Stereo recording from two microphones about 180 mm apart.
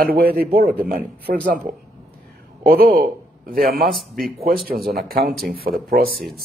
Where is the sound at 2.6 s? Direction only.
55° right (ahead or behind).